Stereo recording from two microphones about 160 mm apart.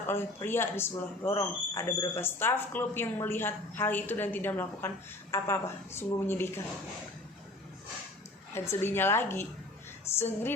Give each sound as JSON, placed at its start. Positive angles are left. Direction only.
{"t": 0.1, "sound": "a woman's voice", "side_deg": 15}
{"t": 1.2, "sound": "speech", "side_deg": 30}
{"t": 1.7, "sound": "a woman's voice", "side_deg": 15}
{"t": 8.5, "sound": "a woman's voice", "side_deg": 15}